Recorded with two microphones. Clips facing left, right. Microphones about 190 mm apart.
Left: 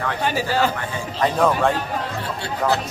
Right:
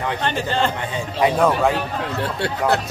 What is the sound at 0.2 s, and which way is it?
Speech, 5° left (ahead or behind).